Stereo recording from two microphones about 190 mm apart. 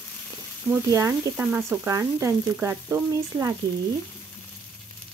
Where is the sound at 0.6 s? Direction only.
15° right (ahead or behind).